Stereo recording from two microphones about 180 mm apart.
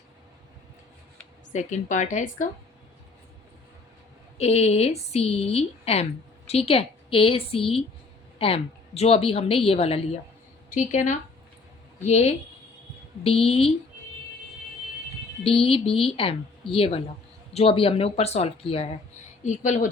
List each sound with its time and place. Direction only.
1.5 s speech: 40° left (ahead or behind)
4.4 s a woman's voice: 35° left (ahead or behind)
15.4 s a woman's voice: 30° left (ahead or behind)